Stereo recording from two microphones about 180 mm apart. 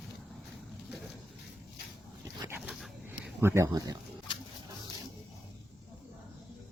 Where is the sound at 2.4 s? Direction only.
15° right (ahead or behind).